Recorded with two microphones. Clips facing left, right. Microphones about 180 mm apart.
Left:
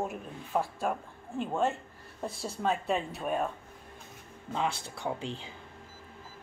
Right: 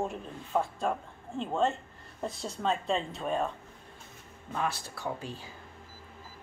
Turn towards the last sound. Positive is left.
turn(degrees=20)  # may be behind; listen again after turning